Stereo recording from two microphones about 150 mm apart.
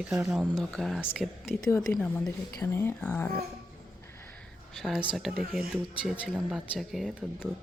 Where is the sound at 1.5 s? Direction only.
15° left (ahead or behind).